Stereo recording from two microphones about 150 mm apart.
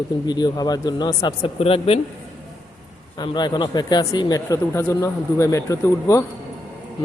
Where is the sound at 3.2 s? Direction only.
30° left (ahead or behind).